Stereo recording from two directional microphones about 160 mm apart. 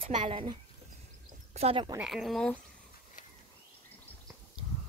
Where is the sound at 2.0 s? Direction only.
Centre (ahead or behind).